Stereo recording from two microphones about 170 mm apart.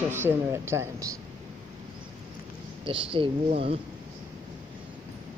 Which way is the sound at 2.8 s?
30° right (ahead or behind).